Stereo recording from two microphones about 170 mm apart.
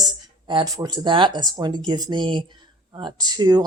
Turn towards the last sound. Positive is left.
turn(degrees=-25)  # may be behind; listen again after turning